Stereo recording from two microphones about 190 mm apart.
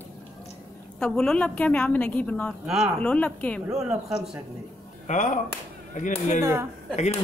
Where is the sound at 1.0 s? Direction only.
5° left (ahead or behind).